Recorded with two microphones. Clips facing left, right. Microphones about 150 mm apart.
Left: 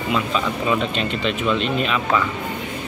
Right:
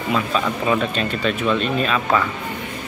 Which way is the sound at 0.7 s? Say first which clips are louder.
Right 1 dB; 20° left (ahead or behind).